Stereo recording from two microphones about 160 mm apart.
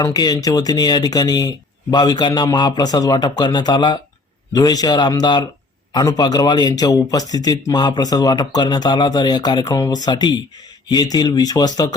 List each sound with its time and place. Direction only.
0.0 s speech: 25° left (ahead or behind)